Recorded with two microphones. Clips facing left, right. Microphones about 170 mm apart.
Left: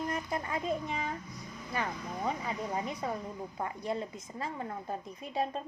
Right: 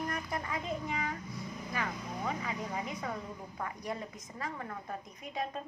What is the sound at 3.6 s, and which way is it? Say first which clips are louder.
A woman's voice: left 4 dB; 25° left (ahead or behind).